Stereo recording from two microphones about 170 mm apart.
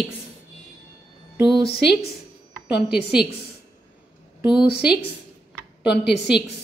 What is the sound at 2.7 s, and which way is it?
Speech, 70° left (ahead or behind).